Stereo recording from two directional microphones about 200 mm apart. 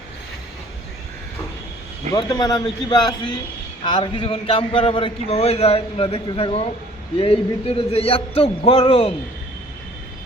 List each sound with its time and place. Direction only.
2.1 s a man's voice: 20° left (ahead or behind)